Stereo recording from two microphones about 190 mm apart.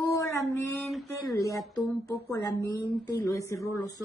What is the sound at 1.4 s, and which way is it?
A woman's voice, 15° left (ahead or behind).